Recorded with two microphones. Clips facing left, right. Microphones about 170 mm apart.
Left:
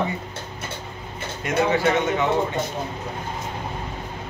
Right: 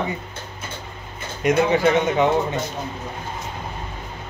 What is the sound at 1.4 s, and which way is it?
Speech, 20° right (ahead or behind).